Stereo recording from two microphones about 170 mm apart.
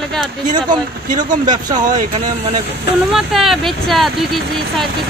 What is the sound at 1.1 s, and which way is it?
Speech, 25° right (ahead or behind).